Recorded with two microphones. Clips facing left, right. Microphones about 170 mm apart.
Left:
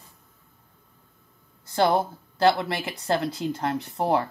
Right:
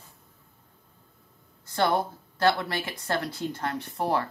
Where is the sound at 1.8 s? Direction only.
25° left (ahead or behind).